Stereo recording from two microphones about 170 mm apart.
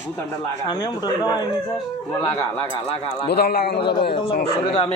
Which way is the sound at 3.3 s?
70° left (ahead or behind).